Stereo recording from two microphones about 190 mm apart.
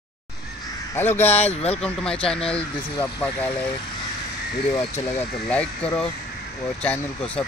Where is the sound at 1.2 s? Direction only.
35° left (ahead or behind).